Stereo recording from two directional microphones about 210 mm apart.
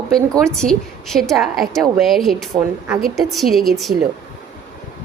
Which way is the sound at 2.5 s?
15° right (ahead or behind).